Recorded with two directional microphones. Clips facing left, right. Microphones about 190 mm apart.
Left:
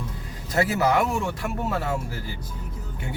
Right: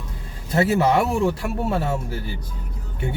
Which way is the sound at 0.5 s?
25° right (ahead or behind).